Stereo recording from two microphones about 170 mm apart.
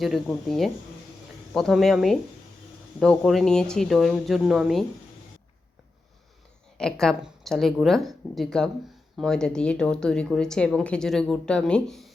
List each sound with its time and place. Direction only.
0.0 s speech: centre (ahead or behind)
6.7 s speech: 5° left (ahead or behind)